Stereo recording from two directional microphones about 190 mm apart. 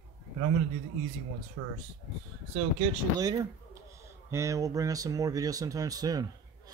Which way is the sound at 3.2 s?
20° right (ahead or behind).